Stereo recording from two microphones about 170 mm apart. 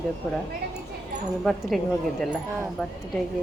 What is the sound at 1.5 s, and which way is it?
Speech, centre (ahead or behind).